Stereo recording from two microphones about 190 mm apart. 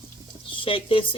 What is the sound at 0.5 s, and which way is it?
Speech, 30° left (ahead or behind).